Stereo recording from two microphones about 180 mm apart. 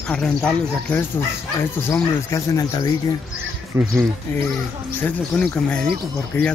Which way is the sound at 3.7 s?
15° right (ahead or behind).